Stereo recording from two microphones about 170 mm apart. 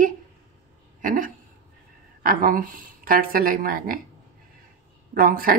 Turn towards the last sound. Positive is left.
turn(degrees=-55)  # may be behind; listen again after turning